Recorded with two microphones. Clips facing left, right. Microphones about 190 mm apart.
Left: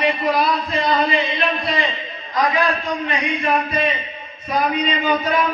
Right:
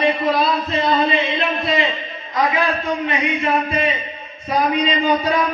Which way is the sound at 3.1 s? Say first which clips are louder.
Even; 25° right (ahead or behind).